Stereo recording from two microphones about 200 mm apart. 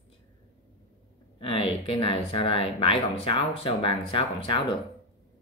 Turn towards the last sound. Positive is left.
turn(degrees=25)  # may be behind; listen again after turning